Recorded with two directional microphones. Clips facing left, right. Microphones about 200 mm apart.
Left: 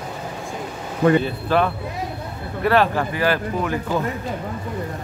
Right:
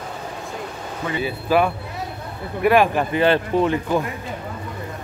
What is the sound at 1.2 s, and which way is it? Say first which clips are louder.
A man's voice: right 1 dB; 10° right (ahead or behind).